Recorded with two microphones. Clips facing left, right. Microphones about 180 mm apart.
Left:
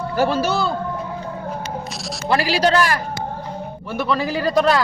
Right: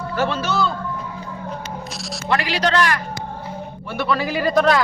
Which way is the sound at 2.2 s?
35° left (ahead or behind).